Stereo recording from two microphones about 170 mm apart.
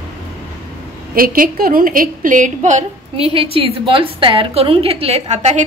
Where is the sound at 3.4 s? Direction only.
30° right (ahead or behind).